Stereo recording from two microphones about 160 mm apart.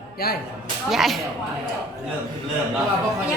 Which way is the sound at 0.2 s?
75° left (ahead or behind).